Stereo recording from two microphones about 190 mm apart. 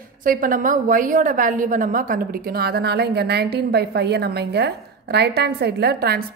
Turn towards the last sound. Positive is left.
turn(degrees=-60)  # may be behind; listen again after turning